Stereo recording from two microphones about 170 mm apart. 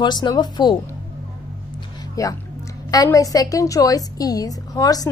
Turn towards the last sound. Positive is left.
turn(degrees=20)  # may be behind; listen again after turning